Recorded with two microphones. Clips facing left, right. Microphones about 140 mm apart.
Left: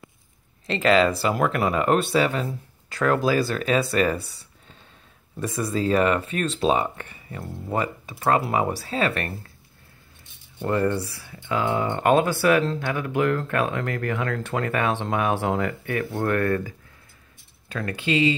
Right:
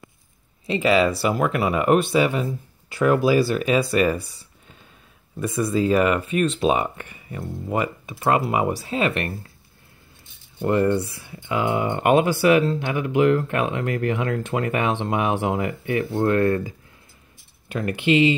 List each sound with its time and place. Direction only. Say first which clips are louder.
0.7 s speech: even; 10° right (ahead or behind)
5.7 s speech: right 2 dB; 5° right (ahead or behind)
10.6 s speech: right 3 dB; 20° right (ahead or behind)